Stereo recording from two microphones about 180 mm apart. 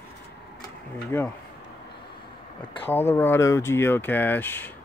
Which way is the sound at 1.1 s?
10° left (ahead or behind).